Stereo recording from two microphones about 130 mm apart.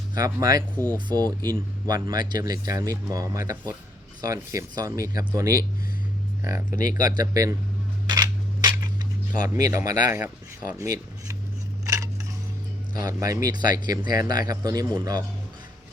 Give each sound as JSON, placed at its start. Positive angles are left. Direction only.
{"t": 0.1, "sound": "speech", "side_deg": -30}
{"t": 6.7, "sound": "speech", "side_deg": 90}
{"t": 6.9, "sound": "speech", "side_deg": -30}
{"t": 8.0, "sound": "a sound", "side_deg": -30}
{"t": 9.4, "sound": "speech", "side_deg": -25}
{"t": 12.9, "sound": "speech", "side_deg": -30}